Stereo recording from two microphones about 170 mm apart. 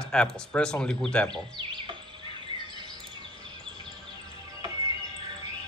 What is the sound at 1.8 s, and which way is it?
Bird, 30° right (ahead or behind).